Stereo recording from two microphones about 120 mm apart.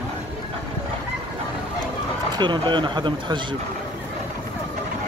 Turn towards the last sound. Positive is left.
turn(degrees=-40)  # may be behind; listen again after turning